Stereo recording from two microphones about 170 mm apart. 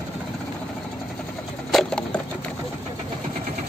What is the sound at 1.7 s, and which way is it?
Wood, centre (ahead or behind).